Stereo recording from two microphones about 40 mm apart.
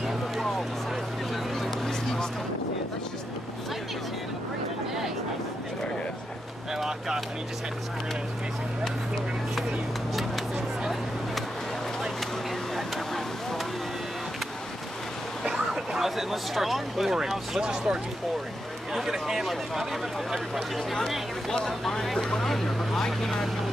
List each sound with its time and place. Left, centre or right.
1.3 s vehicle: centre
6.7 s vehicle: centre
10.5 s a sound: centre
12.7 s vehicle: centre
15.4 s speech: centre
17.6 s speech: centre
18.9 s speech: centre
21.5 s speech: centre